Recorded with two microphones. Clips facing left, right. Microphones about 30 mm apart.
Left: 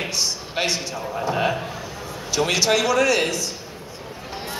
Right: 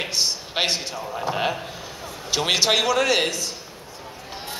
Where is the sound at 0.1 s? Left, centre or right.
Right.